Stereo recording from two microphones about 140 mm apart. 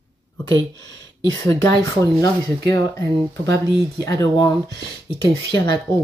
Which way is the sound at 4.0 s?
20° left (ahead or behind).